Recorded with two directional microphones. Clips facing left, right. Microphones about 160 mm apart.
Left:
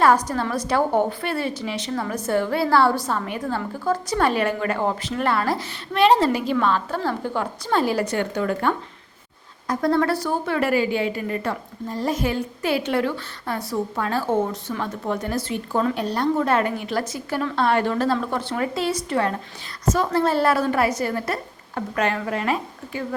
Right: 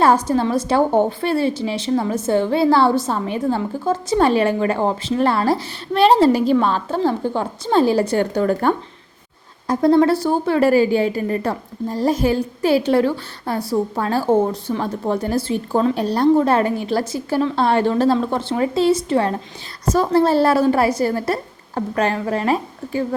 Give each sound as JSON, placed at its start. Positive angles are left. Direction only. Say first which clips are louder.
{"t": 0.0, "sound": "a woman's voice", "louder": "right 3 dB", "side_deg": -25}
{"t": 9.6, "sound": "a woman's voice", "louder": "right 6 dB", "side_deg": -25}